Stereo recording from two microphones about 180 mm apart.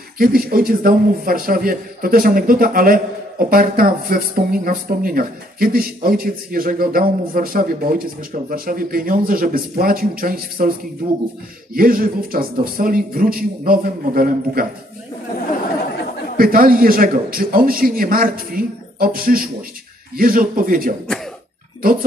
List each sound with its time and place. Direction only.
0.2 s a man's voice: 55° right (ahead or behind)
11.7 s a man's voice: 50° right (ahead or behind)
16.3 s a man's voice: 55° right (ahead or behind)